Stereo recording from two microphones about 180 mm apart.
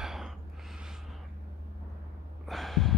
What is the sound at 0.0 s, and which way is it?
Gasp, centre (ahead or behind).